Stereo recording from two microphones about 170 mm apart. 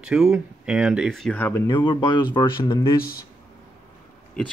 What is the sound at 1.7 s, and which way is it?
Speech, 25° left (ahead or behind).